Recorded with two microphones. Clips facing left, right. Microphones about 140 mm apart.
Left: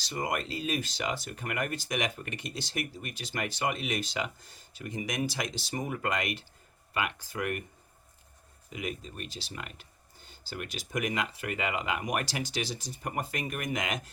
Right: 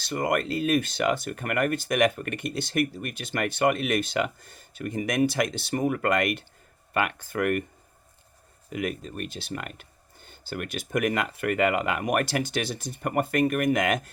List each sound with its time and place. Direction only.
0.0 s speech: 55° right (ahead or behind)
8.7 s speech: 55° right (ahead or behind)